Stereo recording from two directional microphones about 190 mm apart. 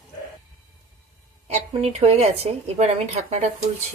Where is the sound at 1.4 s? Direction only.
35° right (ahead or behind).